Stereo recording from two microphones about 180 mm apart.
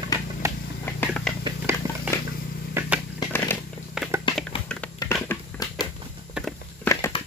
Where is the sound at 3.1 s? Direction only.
10° left (ahead or behind).